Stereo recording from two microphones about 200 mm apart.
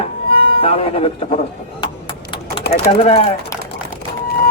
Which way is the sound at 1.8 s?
25° left (ahead or behind).